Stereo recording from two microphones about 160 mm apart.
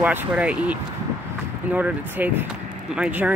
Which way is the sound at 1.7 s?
10° right (ahead or behind).